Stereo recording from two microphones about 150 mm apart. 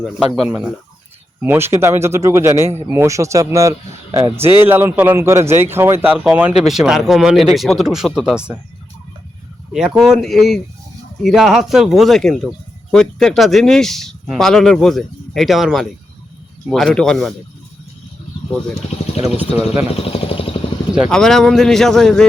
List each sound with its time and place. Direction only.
0.0 s a man's voice: centre (ahead or behind)
9.7 s speech: 5° right (ahead or behind)
19.9 s speech: 40° left (ahead or behind)
21.1 s speech: 5° left (ahead or behind)